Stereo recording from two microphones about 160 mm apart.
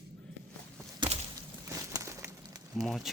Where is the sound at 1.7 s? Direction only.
20° right (ahead or behind).